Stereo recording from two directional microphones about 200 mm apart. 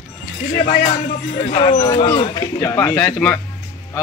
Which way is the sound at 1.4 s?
30° left (ahead or behind).